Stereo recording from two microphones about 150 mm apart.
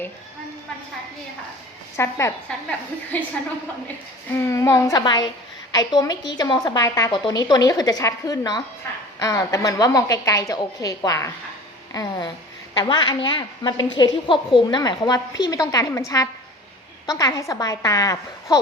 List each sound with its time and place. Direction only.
2.0 s a woman's voice: 20° left (ahead or behind)
4.4 s a woman's voice: 20° left (ahead or behind)